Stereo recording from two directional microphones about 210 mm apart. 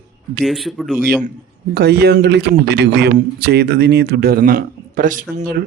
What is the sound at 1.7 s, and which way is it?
Speech, 50° right (ahead or behind).